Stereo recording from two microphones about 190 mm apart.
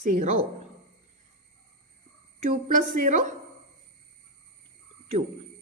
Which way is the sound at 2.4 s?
40° right (ahead or behind).